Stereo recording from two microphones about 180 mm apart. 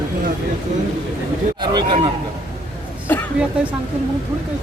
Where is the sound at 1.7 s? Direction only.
35° right (ahead or behind).